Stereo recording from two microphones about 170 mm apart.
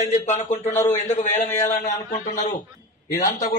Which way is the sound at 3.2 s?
55° left (ahead or behind).